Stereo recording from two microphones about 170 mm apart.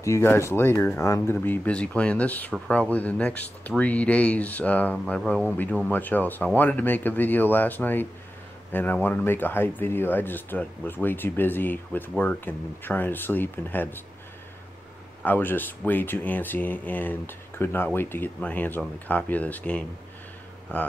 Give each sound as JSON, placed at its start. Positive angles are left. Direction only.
{"t": 0.0, "sound": "speech", "side_deg": 15}
{"t": 15.2, "sound": "speech", "side_deg": 10}